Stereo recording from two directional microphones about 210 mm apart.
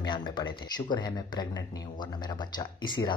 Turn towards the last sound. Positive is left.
turn(degrees=20)  # may be behind; listen again after turning